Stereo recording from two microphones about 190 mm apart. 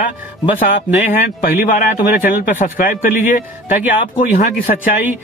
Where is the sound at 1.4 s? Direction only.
45° left (ahead or behind).